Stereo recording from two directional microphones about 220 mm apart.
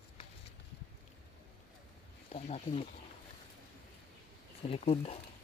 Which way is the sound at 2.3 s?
30° left (ahead or behind).